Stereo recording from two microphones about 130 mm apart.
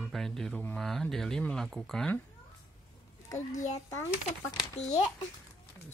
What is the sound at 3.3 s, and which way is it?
Speech, 70° left (ahead or behind).